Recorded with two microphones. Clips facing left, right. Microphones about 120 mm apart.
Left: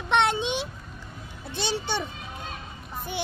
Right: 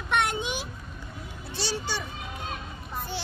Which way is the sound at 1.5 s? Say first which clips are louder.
Left 3 dB; 20° left (ahead or behind).